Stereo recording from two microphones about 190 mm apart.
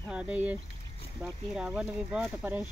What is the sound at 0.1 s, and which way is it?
Speech, 5° right (ahead or behind).